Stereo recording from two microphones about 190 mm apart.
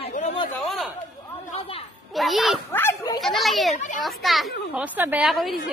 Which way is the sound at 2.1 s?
Centre (ahead or behind).